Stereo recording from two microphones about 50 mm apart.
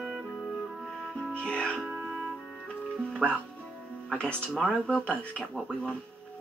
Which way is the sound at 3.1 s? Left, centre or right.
Left.